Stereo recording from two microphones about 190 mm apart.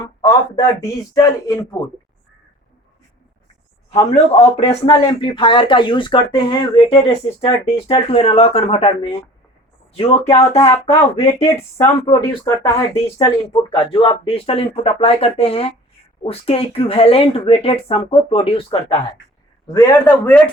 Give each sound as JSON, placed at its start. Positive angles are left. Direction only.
{"t": 0.0, "sound": "speech", "side_deg": 20}
{"t": 3.9, "sound": "speech", "side_deg": 30}
{"t": 11.8, "sound": "speech", "side_deg": 25}
{"t": 12.9, "sound": "speech", "side_deg": 30}
{"t": 19.6, "sound": "a man's voice", "side_deg": 15}